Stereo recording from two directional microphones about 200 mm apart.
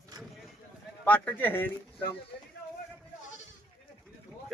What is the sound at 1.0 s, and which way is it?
Speech, 5° left (ahead or behind).